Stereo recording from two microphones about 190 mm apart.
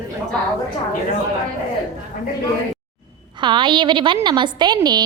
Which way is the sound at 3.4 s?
25° right (ahead or behind).